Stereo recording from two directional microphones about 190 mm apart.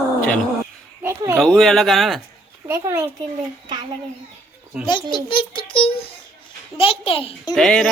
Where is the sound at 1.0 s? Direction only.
15° right (ahead or behind).